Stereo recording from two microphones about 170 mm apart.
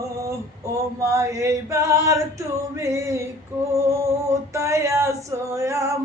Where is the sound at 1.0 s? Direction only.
15° right (ahead or behind).